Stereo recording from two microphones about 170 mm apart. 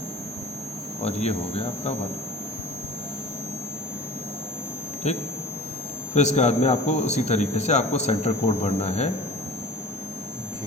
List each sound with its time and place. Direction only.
1.0 s speech: 40° left (ahead or behind)
5.0 s speech: 40° left (ahead or behind)